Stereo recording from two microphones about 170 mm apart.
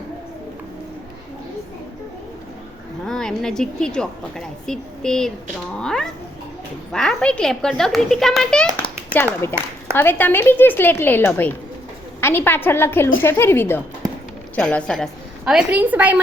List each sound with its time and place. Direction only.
3.1 s a woman's voice: 5° left (ahead or behind)